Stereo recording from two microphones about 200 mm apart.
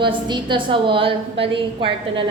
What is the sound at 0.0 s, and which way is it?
A woman's voice, 25° right (ahead or behind).